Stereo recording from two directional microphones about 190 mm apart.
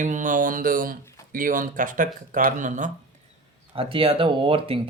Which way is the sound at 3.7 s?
30° right (ahead or behind).